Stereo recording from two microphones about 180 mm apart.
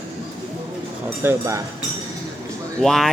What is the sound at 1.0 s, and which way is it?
Speech, 15° right (ahead or behind).